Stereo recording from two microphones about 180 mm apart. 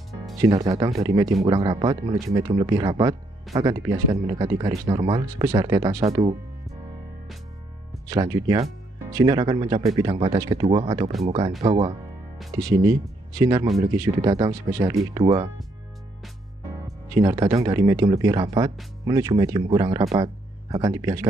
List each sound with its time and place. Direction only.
0.4 s speech: 20° right (ahead or behind)
4.5 s speech: 30° right (ahead or behind)
8.1 s speech: 20° right (ahead or behind)
10.7 s speech: 35° right (ahead or behind)
12.5 s speech: 15° right (ahead or behind)
16.7 s speech: 20° right (ahead or behind)